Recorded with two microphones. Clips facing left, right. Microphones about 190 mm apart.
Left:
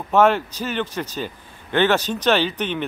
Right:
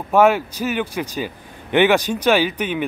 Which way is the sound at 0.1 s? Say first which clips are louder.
Right 2 dB; 10° right (ahead or behind).